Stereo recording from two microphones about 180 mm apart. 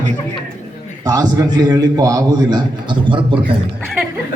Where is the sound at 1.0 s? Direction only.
20° right (ahead or behind).